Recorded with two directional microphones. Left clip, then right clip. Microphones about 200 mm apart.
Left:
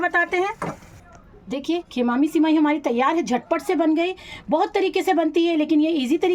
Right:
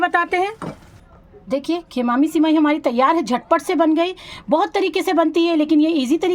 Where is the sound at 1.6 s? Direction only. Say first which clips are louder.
Left 1 dB; 35° right (ahead or behind).